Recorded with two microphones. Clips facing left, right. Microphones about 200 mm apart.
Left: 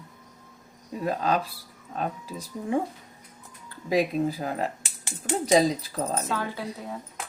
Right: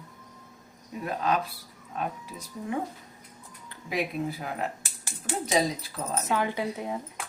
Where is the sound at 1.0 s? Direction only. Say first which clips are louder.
Left 2 dB; 35° left (ahead or behind).